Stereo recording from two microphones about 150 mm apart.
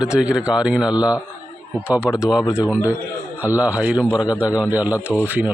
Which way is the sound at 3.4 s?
10° right (ahead or behind).